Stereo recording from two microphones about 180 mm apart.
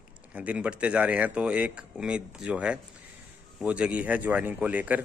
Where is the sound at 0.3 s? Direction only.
5° right (ahead or behind).